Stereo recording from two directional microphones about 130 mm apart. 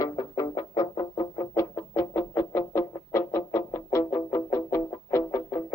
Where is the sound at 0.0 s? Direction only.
25° left (ahead or behind).